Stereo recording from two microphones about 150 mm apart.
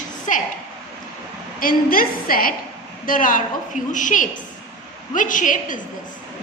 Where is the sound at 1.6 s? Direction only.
70° left (ahead or behind).